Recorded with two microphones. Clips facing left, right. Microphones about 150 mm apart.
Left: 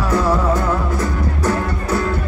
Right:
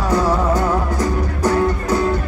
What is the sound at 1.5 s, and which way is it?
Music, 15° right (ahead or behind).